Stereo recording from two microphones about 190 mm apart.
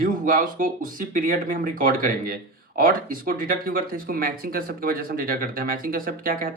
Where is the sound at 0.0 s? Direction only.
45° right (ahead or behind).